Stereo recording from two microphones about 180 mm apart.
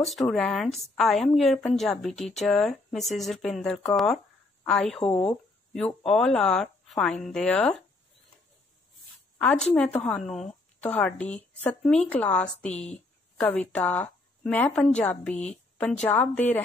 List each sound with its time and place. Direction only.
0.0 s speech: centre (ahead or behind)
5.0 s speech: 25° left (ahead or behind)
5.7 s speech: 5° left (ahead or behind)
9.4 s a woman's voice: 10° left (ahead or behind)